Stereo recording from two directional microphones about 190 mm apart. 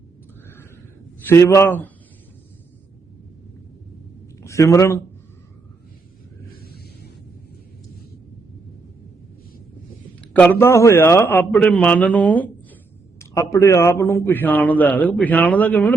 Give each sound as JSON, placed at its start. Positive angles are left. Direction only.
{"t": 1.3, "sound": "a man's voice", "side_deg": 15}
{"t": 4.4, "sound": "a man's voice", "side_deg": 15}
{"t": 10.2, "sound": "a man's voice", "side_deg": 5}